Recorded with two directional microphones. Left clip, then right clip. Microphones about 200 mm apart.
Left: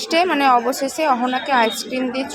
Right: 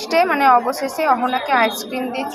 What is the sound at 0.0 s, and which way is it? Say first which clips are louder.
A woman's voice: right 1 dB; 20° left (ahead or behind).